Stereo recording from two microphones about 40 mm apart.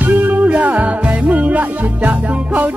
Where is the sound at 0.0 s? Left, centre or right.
Right.